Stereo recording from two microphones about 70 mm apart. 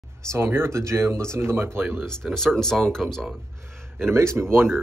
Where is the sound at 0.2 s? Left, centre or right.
Right.